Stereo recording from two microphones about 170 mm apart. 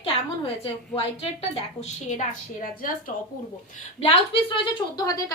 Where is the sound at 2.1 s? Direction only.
45° left (ahead or behind).